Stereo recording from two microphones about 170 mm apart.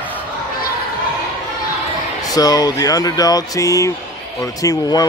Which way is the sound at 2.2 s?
20° left (ahead or behind).